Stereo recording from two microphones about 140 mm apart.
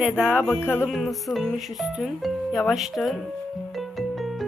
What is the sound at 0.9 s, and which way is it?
Speech, centre (ahead or behind).